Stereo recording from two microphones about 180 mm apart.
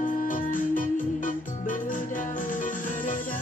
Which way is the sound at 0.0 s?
45° left (ahead or behind).